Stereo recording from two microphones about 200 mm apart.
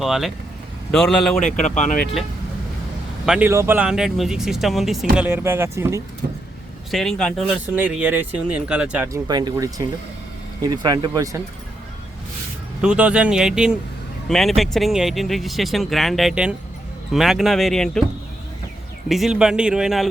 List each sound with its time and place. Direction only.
0.0 s speech: centre (ahead or behind)
1.4 s speech: 40° left (ahead or behind)
3.2 s speech: 5° right (ahead or behind)
6.9 s speech: centre (ahead or behind)
9.2 s speech: 20° right (ahead or behind)
12.8 s speech: 5° right (ahead or behind)
19.0 s speech: centre (ahead or behind)